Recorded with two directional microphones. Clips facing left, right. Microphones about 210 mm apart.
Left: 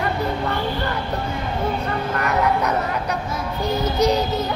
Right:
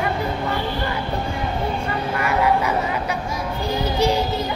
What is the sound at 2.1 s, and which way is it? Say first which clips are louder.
Vehicle: right 1 dB; 5° right (ahead or behind).